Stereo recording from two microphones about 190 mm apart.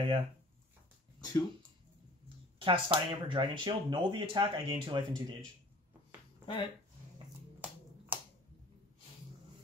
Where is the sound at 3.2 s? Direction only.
25° right (ahead or behind).